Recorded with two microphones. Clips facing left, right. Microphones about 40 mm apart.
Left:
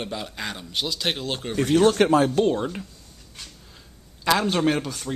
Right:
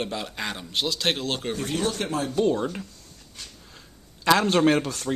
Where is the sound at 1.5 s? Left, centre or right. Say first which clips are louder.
Left 8 dB; left.